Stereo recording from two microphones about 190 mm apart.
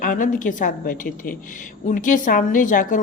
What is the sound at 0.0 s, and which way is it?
A woman's voice, 45° left (ahead or behind).